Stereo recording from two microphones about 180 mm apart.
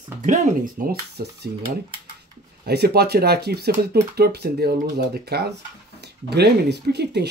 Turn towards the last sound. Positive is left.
turn(degrees=-65)  # may be behind; listen again after turning